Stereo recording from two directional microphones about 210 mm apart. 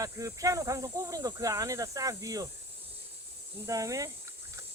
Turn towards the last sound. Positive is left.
turn(degrees=-15)  # may be behind; listen again after turning